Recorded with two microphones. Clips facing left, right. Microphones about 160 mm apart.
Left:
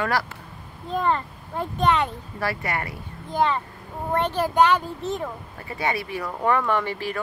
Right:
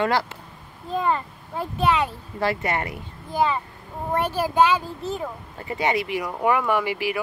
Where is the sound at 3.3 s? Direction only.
5° right (ahead or behind).